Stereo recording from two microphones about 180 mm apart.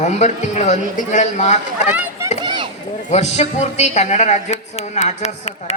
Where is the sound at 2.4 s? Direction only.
25° right (ahead or behind).